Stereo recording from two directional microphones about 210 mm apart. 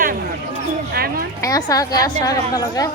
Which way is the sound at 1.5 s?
15° left (ahead or behind).